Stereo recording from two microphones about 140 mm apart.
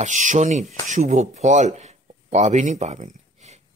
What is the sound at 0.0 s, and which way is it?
Speech, 65° right (ahead or behind).